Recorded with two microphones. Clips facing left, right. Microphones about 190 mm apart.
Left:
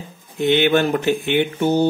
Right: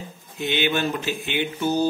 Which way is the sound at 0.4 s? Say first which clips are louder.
Left 8 dB; 55° left (ahead or behind).